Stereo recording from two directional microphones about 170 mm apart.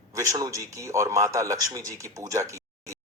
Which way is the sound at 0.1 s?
20° right (ahead or behind).